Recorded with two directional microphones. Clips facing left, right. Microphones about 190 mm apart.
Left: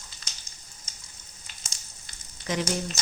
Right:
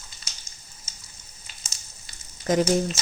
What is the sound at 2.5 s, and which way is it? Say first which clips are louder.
Speech: right 8 dB; 45° right (ahead or behind).